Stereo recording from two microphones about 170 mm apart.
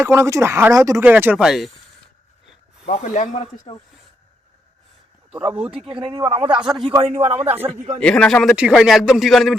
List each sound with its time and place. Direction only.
0.0 s speech: 15° right (ahead or behind)
2.9 s speech: 45° left (ahead or behind)
5.3 s speech: 5° right (ahead or behind)
6.0 s a man's voice: 30° right (ahead or behind)
7.3 s speech: 10° right (ahead or behind)
7.9 s speech: 5° left (ahead or behind)